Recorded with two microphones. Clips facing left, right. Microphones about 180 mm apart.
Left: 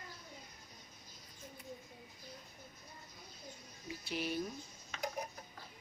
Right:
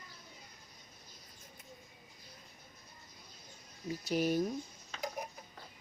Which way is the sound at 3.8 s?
45° right (ahead or behind).